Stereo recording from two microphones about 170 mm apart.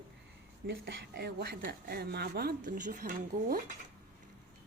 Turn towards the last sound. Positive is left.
turn(degrees=-55)  # may be behind; listen again after turning